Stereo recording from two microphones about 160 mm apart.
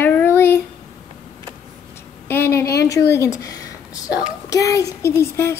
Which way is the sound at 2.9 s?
15° left (ahead or behind).